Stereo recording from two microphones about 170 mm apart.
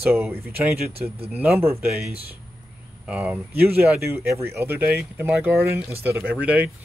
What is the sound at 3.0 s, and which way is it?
Speech, 5° right (ahead or behind).